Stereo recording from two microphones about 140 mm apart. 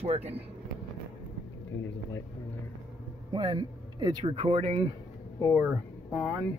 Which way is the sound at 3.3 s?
30° right (ahead or behind).